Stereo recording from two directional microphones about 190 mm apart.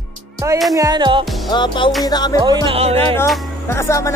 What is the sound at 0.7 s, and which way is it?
Music, 20° right (ahead or behind).